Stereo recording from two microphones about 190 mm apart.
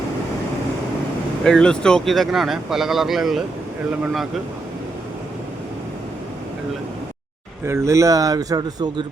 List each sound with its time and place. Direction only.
1.5 s speech: 5° left (ahead or behind)
7.6 s speech: 15° right (ahead or behind)